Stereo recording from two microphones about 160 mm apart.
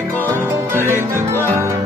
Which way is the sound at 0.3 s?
15° right (ahead or behind).